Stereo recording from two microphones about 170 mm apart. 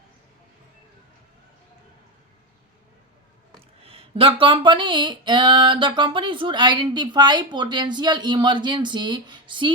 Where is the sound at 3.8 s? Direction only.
35° right (ahead or behind).